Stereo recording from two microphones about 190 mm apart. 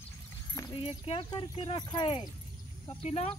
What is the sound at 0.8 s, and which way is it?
Speech, 30° left (ahead or behind).